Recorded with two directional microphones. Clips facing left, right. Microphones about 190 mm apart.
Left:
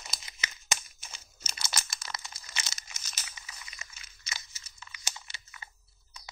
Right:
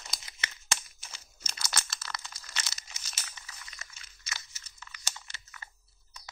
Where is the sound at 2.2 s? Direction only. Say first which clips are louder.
Even; 15° left (ahead or behind).